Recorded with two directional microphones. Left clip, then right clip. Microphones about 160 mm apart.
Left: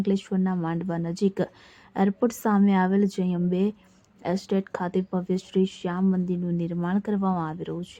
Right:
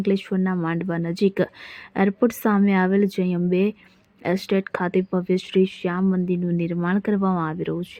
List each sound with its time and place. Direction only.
0.0 s speech: 20° right (ahead or behind)